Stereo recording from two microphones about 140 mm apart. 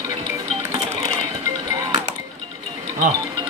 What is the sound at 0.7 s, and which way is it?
Cash register, 50° right (ahead or behind).